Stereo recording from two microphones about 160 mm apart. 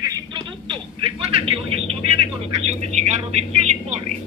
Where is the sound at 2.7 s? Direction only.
45° right (ahead or behind).